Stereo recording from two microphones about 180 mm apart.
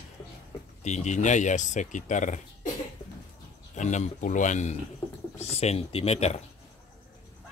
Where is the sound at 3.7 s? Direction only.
40° left (ahead or behind).